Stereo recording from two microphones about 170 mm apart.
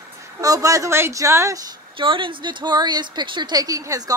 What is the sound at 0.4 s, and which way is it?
Speech, 20° right (ahead or behind).